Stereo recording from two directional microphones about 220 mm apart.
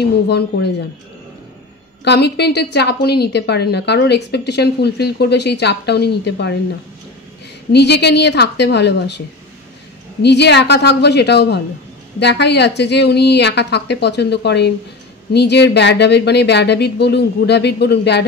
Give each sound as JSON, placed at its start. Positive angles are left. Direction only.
{"t": 0.3, "sound": "a woman's voice", "side_deg": 50}
{"t": 2.0, "sound": "a woman's voice", "side_deg": 50}
{"t": 7.7, "sound": "a woman's voice", "side_deg": 50}
{"t": 10.2, "sound": "a woman's voice", "side_deg": 50}